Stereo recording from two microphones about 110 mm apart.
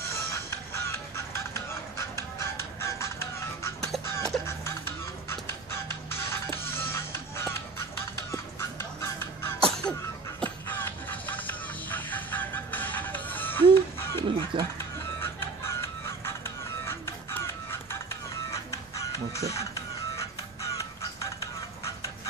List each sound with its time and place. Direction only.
0.1 s music: 25° left (ahead or behind)
9.6 s sneeze: 5° left (ahead or behind)
10.4 s music: 20° left (ahead or behind)